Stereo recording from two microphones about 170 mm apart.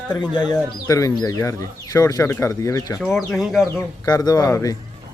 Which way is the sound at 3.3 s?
Centre (ahead or behind).